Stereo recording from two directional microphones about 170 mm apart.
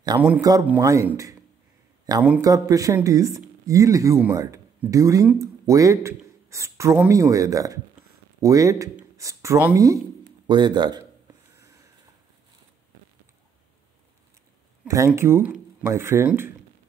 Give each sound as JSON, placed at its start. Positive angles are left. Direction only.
{"t": 0.4, "sound": "speech", "side_deg": -20}
{"t": 11.5, "sound": "a sound", "side_deg": -15}
{"t": 14.9, "sound": "speech", "side_deg": -15}